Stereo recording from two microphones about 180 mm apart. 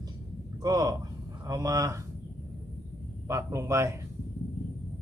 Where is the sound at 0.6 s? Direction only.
20° right (ahead or behind).